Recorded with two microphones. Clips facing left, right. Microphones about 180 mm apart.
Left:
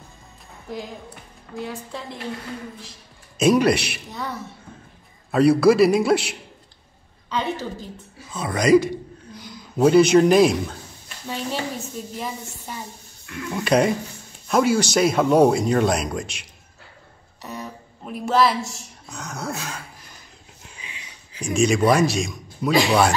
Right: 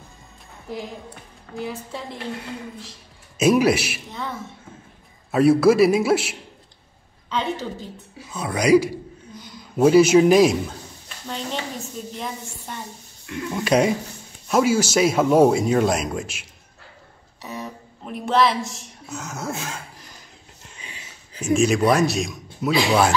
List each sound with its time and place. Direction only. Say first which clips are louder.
0.7 s speech: right 1 dB; centre (ahead or behind)
3.3 s a woman's voice: even; 5° right (ahead or behind)
8.3 s speech: even; 5° right (ahead or behind)
11.2 s a woman's voice: left 2 dB; 5° left (ahead or behind)
13.3 s speech: right 1 dB; 20° right (ahead or behind)
13.7 s speech: even; centre (ahead or behind)
21.5 s speech: even; centre (ahead or behind)